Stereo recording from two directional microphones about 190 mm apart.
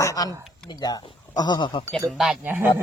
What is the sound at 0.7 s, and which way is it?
Speech, 20° left (ahead or behind).